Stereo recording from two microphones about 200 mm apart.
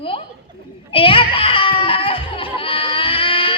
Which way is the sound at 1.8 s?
25° left (ahead or behind).